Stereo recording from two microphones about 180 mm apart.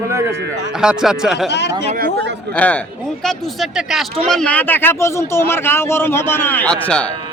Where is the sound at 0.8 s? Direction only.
5° right (ahead or behind).